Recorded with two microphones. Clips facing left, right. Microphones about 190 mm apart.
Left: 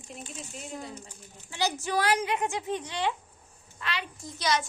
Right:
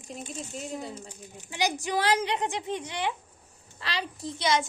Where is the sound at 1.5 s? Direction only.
15° right (ahead or behind).